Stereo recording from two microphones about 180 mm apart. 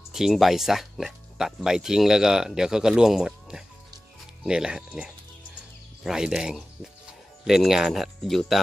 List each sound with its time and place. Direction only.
0.1 s speech: centre (ahead or behind)